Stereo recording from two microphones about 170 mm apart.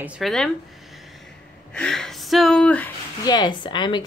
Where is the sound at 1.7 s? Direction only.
5° left (ahead or behind).